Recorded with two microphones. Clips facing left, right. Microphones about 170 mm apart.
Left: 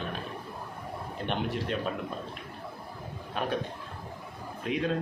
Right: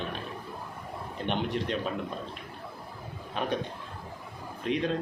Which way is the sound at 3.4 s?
5° left (ahead or behind).